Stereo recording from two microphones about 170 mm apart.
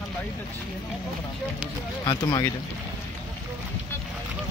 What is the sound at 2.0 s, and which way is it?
Speech, 25° left (ahead or behind).